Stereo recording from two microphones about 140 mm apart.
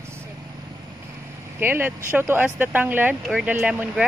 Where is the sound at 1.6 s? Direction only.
15° right (ahead or behind).